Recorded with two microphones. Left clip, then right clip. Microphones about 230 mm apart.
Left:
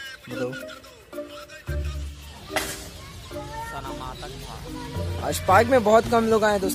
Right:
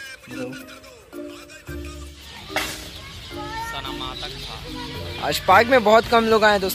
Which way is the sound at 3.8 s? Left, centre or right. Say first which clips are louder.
Right 4 dB; left.